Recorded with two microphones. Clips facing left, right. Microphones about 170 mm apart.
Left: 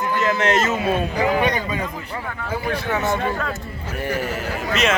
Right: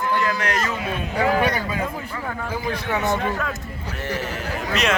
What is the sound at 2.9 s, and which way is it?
Speech, 20° right (ahead or behind).